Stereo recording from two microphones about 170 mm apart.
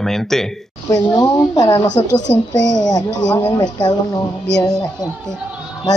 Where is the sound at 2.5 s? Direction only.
90° left.